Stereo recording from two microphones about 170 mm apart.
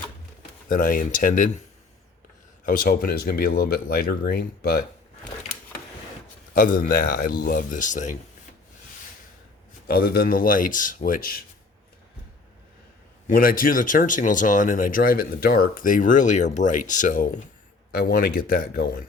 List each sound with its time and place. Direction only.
0.7 s speech: 55° left (ahead or behind)
2.6 s speech: 55° left (ahead or behind)
6.5 s speech: 55° left (ahead or behind)
9.8 s speech: 65° left (ahead or behind)
13.2 s speech: 55° left (ahead or behind)
17.9 s speech: 65° left (ahead or behind)